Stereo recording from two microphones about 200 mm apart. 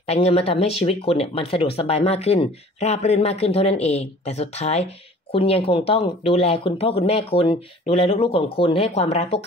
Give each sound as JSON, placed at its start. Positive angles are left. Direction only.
{"t": 0.0, "sound": "speech", "side_deg": 30}